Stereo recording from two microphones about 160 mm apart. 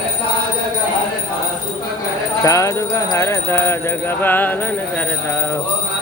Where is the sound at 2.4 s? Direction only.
20° left (ahead or behind).